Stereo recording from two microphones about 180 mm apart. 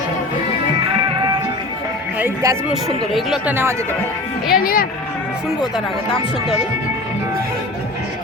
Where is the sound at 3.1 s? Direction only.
Centre (ahead or behind).